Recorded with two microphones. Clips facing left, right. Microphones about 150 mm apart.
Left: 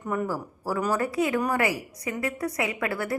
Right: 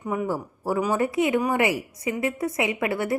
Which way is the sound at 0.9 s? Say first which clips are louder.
Right 3 dB; 20° right (ahead or behind).